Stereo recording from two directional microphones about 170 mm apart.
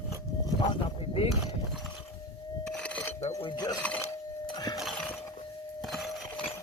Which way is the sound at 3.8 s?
10° left (ahead or behind).